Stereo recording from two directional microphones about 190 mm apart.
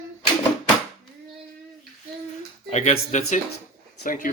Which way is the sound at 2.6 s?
35° left (ahead or behind).